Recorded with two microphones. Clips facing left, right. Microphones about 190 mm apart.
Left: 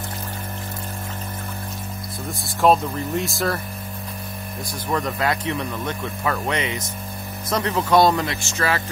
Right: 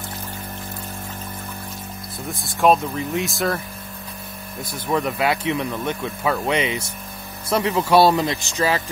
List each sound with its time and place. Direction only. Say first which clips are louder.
2.4 s speech: even; centre (ahead or behind)
4.9 s speech: right 2 dB; 10° right (ahead or behind)